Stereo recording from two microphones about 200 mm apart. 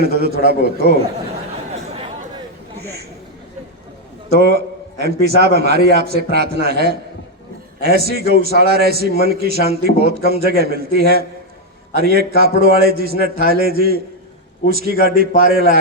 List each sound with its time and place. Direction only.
0.0 s a man's voice: 50° right (ahead or behind)
4.4 s a man's voice: 55° right (ahead or behind)